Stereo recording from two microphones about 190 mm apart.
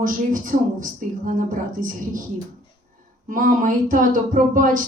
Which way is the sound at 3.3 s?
45° right (ahead or behind).